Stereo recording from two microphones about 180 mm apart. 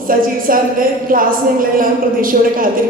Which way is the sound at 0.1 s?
50° right (ahead or behind).